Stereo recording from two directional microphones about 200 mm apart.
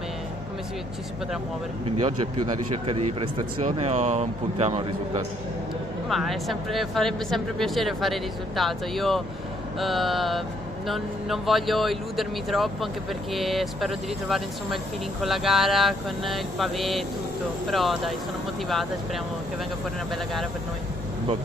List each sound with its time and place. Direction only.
1.9 s speech: 25° right (ahead or behind)
6.0 s speech: centre (ahead or behind)